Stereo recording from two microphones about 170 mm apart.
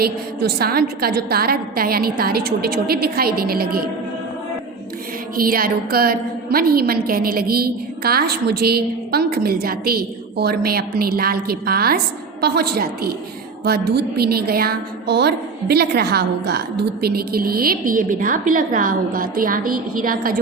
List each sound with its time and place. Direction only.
0.0 s a woman's voice: 65° right (ahead or behind)
5.4 s a woman's voice: 60° right (ahead or behind)